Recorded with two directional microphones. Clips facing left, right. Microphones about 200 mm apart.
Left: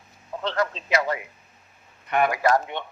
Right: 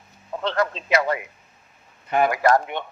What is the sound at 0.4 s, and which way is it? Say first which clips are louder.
Speech: right 2 dB; 60° right (ahead or behind).